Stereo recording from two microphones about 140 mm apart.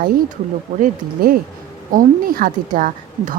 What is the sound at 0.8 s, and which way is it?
A woman's voice, 90° right.